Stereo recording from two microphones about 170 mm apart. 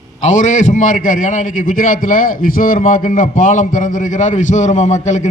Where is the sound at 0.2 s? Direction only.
45° left (ahead or behind).